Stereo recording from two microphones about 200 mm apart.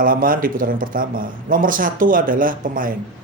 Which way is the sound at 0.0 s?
45° right (ahead or behind).